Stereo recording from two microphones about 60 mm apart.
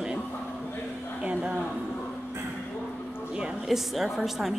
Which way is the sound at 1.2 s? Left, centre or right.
Centre.